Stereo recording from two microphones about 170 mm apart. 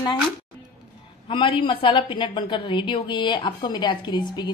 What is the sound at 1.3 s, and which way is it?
A woman's voice, 30° left (ahead or behind).